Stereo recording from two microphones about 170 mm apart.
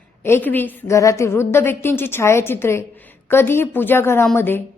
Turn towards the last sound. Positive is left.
turn(degrees=15)  # may be behind; listen again after turning